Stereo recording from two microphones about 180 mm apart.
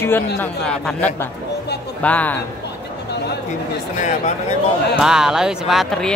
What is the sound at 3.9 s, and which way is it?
Speech, 40° left (ahead or behind).